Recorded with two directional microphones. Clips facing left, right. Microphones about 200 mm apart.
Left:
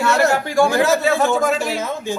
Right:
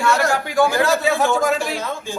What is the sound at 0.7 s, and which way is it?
Speech, 20° left (ahead or behind).